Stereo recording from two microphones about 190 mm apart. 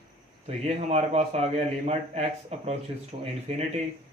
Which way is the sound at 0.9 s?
35° right (ahead or behind).